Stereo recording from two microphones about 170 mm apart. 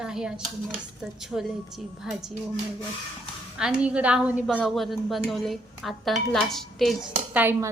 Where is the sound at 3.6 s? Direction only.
5° right (ahead or behind).